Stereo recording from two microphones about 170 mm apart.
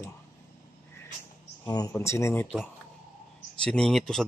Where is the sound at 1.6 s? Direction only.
20° left (ahead or behind).